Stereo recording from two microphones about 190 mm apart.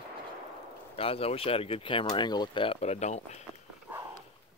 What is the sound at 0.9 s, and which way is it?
Speech, 30° left (ahead or behind).